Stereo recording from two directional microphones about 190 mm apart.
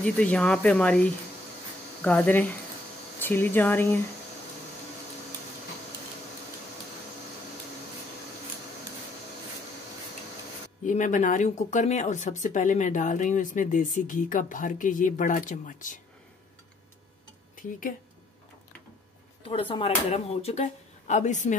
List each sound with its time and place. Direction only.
0.0 s speech: 5° left (ahead or behind)
10.9 s speech: 40° left (ahead or behind)
17.6 s speech: 45° left (ahead or behind)
19.4 s speech: 30° left (ahead or behind)